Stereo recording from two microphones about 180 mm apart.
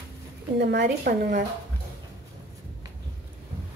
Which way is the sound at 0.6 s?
70° right (ahead or behind).